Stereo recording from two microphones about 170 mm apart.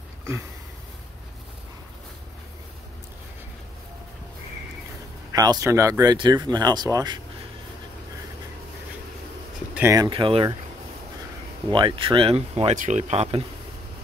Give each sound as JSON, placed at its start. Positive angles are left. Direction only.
{"t": 5.3, "sound": "speech", "side_deg": -20}
{"t": 9.8, "sound": "speech", "side_deg": -15}
{"t": 10.0, "sound": "speech", "side_deg": -30}
{"t": 11.7, "sound": "speech", "side_deg": -30}